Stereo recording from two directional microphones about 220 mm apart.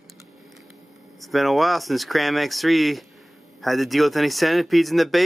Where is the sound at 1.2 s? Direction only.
Centre (ahead or behind).